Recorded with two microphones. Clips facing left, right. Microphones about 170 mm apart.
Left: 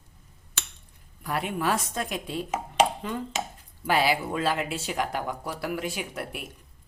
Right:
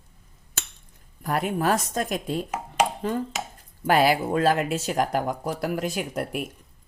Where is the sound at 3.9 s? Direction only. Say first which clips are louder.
Right 4 dB; 50° right (ahead or behind).